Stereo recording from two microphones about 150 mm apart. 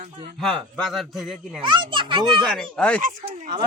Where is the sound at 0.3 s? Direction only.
Centre (ahead or behind).